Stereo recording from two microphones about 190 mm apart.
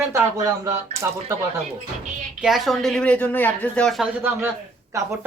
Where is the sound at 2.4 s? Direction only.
Centre (ahead or behind).